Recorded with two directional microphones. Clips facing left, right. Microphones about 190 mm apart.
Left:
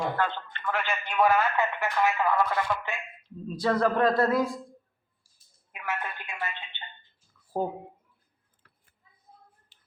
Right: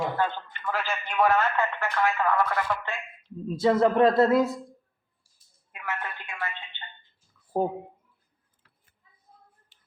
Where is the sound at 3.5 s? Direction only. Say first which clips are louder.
Right 4 dB; 25° right (ahead or behind).